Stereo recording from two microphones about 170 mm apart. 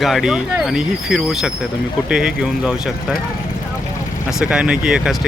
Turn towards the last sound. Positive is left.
turn(degrees=0)  # may be behind; listen again after turning